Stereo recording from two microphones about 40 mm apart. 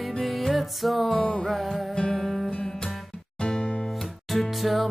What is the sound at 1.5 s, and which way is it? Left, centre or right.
Music, centre.